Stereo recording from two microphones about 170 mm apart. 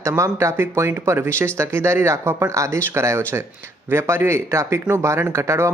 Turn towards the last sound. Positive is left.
turn(degrees=-15)  # may be behind; listen again after turning